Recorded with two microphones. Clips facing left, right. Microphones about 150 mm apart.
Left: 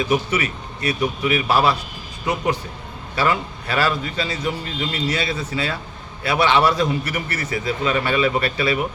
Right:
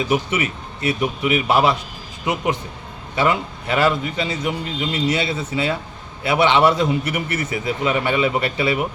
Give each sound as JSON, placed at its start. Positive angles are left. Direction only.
{"t": 0.1, "sound": "a man's voice", "side_deg": -25}